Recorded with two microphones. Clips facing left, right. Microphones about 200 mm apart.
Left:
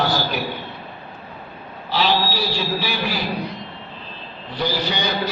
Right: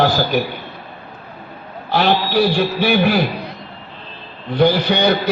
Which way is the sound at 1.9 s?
55° right (ahead or behind).